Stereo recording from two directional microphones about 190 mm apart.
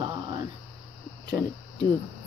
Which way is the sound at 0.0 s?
25° right (ahead or behind).